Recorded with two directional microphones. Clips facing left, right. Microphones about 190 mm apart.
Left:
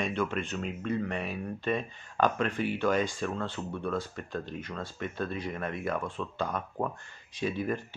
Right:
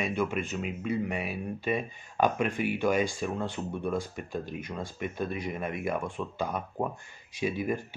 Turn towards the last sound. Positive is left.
turn(degrees=-10)  # may be behind; listen again after turning